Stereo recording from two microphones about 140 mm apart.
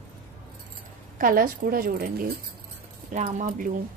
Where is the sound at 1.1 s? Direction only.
85° right.